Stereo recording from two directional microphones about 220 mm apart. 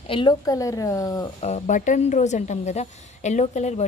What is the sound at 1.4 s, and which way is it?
Speech, 30° left (ahead or behind).